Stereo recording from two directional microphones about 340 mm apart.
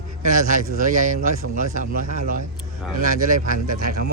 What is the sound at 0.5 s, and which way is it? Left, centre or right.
A man's voice, right.